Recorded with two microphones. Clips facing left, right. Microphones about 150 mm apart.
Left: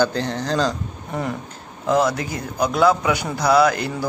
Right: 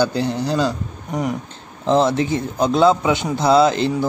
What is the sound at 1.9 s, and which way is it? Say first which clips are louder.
A man's voice: right 3 dB; 25° right (ahead or behind).